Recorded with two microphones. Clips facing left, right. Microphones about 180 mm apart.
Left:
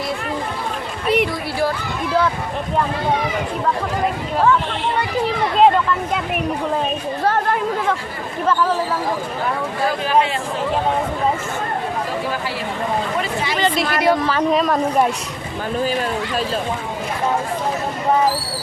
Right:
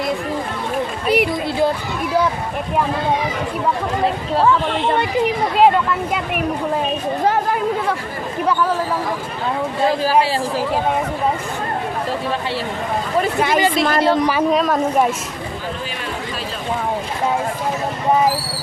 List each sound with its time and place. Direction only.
1.0 s chatter: 5° right (ahead or behind)
7.3 s speech: 5° right (ahead or behind)
9.8 s speech: 35° right (ahead or behind)
13.6 s speech: 10° right (ahead or behind)
14.5 s speech: centre (ahead or behind)